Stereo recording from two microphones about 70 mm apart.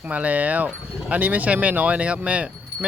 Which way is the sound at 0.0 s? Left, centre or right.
Right.